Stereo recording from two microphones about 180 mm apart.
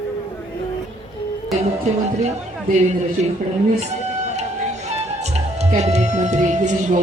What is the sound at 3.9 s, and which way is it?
Music, 40° right (ahead or behind).